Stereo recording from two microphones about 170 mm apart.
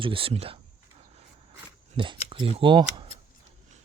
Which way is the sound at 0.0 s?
30° right (ahead or behind).